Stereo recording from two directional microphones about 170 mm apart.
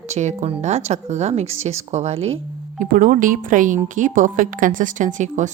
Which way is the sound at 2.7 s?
50° right (ahead or behind).